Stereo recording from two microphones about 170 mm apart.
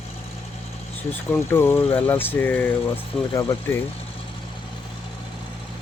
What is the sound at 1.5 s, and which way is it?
Speech, 15° left (ahead or behind).